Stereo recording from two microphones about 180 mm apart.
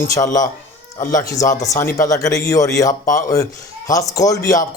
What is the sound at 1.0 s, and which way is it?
Speech, 45° left (ahead or behind).